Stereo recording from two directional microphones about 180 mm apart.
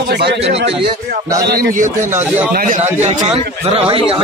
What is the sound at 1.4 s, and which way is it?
Speech, 55° right (ahead or behind).